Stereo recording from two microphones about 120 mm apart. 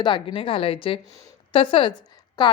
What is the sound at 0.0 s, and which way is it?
A woman's voice, 40° left (ahead or behind).